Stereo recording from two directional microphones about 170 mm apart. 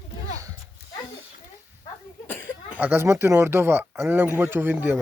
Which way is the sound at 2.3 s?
15° left (ahead or behind).